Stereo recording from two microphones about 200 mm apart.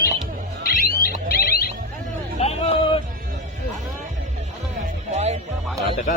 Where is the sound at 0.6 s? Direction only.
50° left (ahead or behind).